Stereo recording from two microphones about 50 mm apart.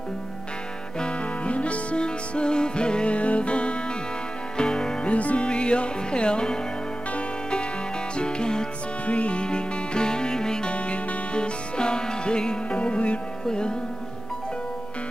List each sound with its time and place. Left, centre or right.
0.9 s music: left